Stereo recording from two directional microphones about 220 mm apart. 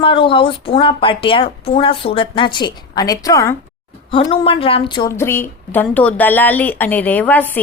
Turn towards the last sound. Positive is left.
turn(degrees=10)  # may be behind; listen again after turning